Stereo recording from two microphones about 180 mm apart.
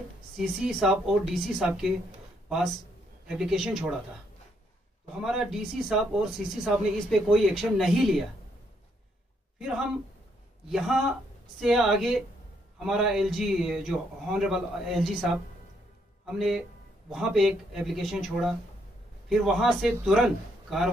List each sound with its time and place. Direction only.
0.6 s a man's voice: centre (ahead or behind)
3.3 s a man's voice: centre (ahead or behind)
5.2 s a man's voice: centre (ahead or behind)
9.6 s a man's voice: 5° right (ahead or behind)